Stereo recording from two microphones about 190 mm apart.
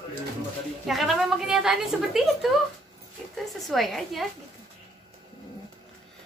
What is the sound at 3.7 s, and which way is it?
Speech, centre (ahead or behind).